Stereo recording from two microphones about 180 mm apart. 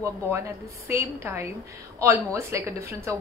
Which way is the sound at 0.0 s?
15° right (ahead or behind).